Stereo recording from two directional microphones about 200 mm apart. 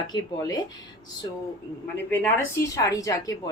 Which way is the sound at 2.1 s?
10° left (ahead or behind).